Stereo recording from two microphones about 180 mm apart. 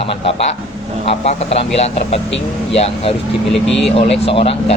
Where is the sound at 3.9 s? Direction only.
35° left (ahead or behind).